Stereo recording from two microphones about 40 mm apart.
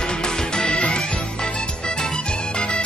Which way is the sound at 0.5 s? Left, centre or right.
Centre.